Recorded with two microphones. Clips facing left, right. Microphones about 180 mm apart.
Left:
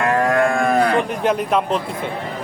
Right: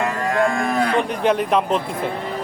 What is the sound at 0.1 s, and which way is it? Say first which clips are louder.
Moo: left 3 dB; 60° left (ahead or behind).